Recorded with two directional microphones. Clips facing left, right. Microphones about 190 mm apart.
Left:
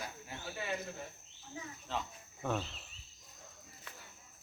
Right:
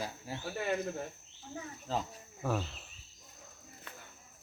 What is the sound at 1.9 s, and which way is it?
Speech, 40° right (ahead or behind).